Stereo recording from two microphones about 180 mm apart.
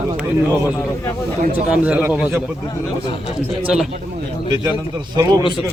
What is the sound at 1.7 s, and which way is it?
Speech, 5° right (ahead or behind).